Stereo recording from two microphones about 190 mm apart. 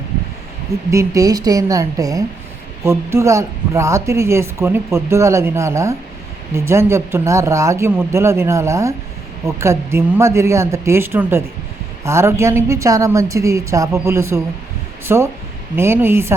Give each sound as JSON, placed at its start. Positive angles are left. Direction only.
{"t": 0.9, "sound": "speech", "side_deg": -15}